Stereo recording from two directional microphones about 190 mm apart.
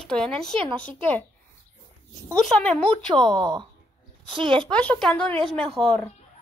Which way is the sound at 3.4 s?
20° right (ahead or behind).